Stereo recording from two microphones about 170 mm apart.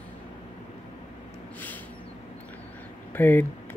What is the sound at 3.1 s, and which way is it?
Speech, 10° left (ahead or behind).